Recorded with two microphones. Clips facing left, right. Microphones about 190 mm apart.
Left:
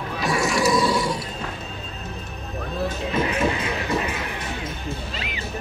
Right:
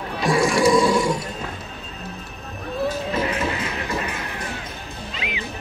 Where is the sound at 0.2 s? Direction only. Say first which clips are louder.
Right 4 dB; 30° right (ahead or behind).